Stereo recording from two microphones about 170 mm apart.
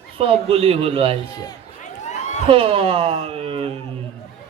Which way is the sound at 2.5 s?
35° right (ahead or behind).